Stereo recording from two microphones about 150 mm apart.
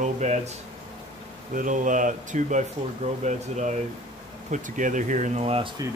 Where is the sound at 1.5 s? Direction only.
60° right (ahead or behind); by 5.7 s 40° right (ahead or behind).